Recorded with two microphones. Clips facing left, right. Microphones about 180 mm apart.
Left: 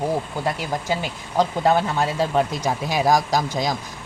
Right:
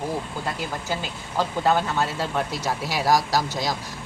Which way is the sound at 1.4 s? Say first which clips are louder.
Left 3 dB; 15° left (ahead or behind).